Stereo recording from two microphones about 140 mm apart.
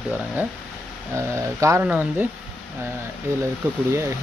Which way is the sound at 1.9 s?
10° right (ahead or behind).